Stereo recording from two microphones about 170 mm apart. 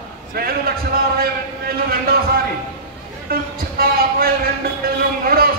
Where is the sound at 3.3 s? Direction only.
60° right (ahead or behind).